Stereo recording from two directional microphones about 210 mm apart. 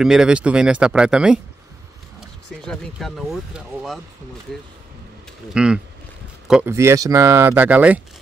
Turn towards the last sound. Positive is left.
turn(degrees=-5)  # may be behind; listen again after turning